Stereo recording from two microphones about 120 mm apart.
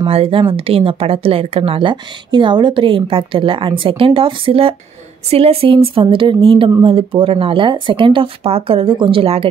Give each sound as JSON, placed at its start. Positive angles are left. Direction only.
{"t": 0.1, "sound": "speech", "side_deg": -50}